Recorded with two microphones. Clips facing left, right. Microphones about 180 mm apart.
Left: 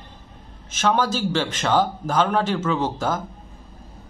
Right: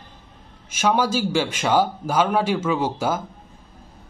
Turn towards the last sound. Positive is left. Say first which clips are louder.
# right 1 dB
turn(degrees=-10)  # may be behind; listen again after turning